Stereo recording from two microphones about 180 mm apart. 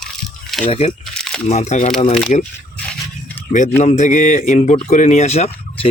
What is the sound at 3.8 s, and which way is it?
Speech, 40° left (ahead or behind).